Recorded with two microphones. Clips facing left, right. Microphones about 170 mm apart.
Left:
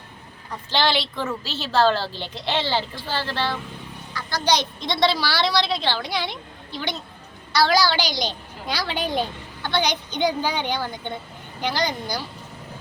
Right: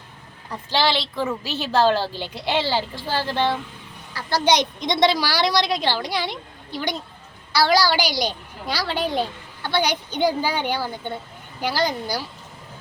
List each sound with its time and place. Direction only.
0.7 s a woman's voice: 5° right (ahead or behind)
1.2 s a woman's voice: 15° right (ahead or behind)
4.1 s a sound: 30° right (ahead or behind)
4.4 s a woman's voice: 15° right (ahead or behind)